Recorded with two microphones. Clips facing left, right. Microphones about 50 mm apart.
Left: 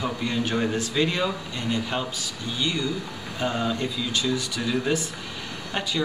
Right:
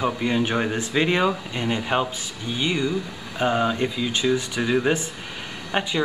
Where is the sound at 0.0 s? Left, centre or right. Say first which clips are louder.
Right 4 dB; right.